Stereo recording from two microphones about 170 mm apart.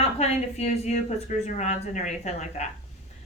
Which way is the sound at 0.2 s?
40° left (ahead or behind).